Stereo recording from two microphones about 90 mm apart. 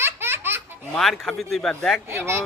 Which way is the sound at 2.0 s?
30° right (ahead or behind).